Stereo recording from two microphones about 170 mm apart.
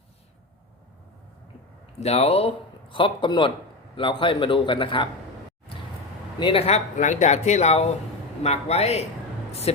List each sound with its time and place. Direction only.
2.0 s a man's voice: 35° left (ahead or behind)
6.4 s speech: 35° left (ahead or behind)